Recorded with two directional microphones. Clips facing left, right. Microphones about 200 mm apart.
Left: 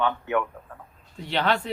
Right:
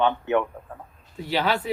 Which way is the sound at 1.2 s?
5° right (ahead or behind).